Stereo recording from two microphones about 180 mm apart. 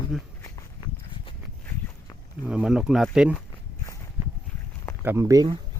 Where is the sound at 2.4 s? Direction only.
5° right (ahead or behind).